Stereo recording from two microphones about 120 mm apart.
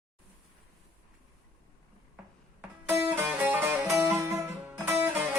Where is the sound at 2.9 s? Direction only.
15° right (ahead or behind).